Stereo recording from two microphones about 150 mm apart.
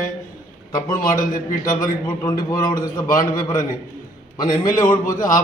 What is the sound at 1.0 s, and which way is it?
Speech, 65° left (ahead or behind).